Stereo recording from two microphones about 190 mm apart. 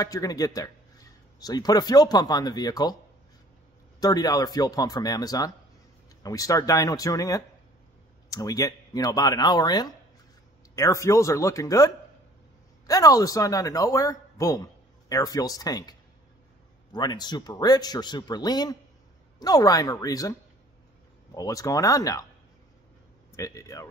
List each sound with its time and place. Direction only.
0.0 s a man's voice: 20° left (ahead or behind)
4.0 s speech: 20° left (ahead or behind)
21.4 s speech: 20° left (ahead or behind)
23.3 s speech: 15° left (ahead or behind)